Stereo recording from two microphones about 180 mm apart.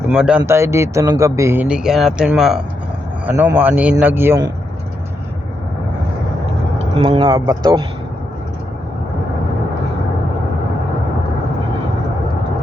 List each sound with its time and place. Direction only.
0.1 s a man's voice: 5° right (ahead or behind)
6.9 s speech: 30° right (ahead or behind)